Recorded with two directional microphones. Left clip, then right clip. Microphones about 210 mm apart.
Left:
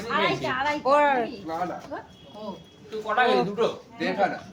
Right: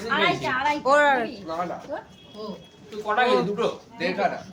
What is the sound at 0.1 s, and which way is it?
Speech, 15° right (ahead or behind).